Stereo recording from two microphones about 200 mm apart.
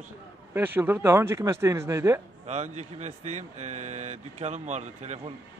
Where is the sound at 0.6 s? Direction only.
10° right (ahead or behind).